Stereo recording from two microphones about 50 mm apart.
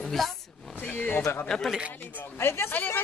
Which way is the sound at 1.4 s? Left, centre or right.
Centre.